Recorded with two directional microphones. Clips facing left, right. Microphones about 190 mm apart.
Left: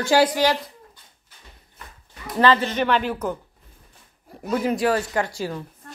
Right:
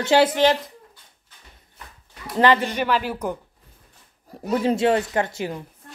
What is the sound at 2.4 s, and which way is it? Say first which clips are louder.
Speech: even; 15° right (ahead or behind).